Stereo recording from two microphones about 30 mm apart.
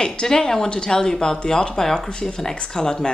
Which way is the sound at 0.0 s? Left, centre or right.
Left.